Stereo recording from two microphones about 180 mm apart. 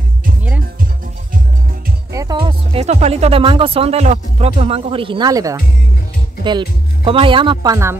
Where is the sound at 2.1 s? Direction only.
25° right (ahead or behind).